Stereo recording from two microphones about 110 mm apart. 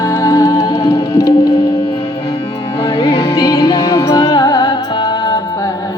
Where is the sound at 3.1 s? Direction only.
45° left (ahead or behind).